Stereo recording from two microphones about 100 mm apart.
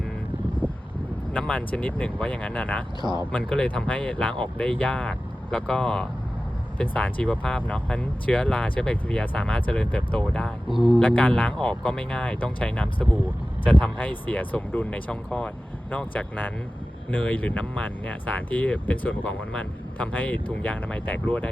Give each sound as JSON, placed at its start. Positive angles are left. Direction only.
{"t": 0.6, "sound": "vehicle", "side_deg": 15}
{"t": 1.3, "sound": "speech", "side_deg": 15}
{"t": 10.7, "sound": "speech", "side_deg": -5}
{"t": 11.0, "sound": "speech", "side_deg": 15}